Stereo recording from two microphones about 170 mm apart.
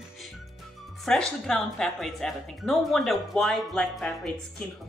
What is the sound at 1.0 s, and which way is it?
Speech, centre (ahead or behind).